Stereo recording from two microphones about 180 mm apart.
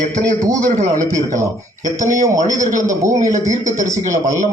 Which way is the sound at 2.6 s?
45° right (ahead or behind).